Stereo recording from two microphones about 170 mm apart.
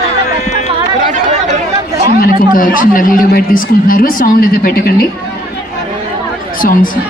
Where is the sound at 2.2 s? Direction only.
55° left (ahead or behind).